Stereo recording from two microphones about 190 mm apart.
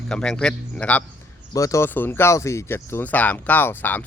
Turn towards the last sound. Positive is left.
turn(degrees=10)  # may be behind; listen again after turning